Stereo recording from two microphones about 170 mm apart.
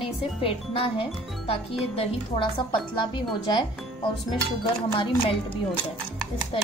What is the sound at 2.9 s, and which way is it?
Speech, 25° left (ahead or behind).